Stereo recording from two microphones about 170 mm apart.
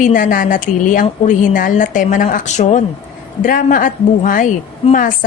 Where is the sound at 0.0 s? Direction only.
50° left (ahead or behind).